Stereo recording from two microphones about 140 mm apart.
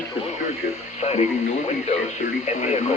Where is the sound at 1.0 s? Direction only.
50° left (ahead or behind).